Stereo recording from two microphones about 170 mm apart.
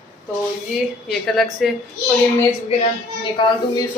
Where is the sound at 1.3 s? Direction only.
Centre (ahead or behind).